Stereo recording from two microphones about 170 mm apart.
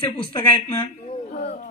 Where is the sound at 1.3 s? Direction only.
35° left (ahead or behind).